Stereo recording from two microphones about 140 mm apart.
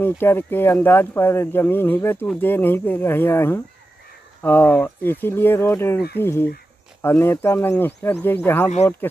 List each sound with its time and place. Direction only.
0.0 s speech: 15° left (ahead or behind)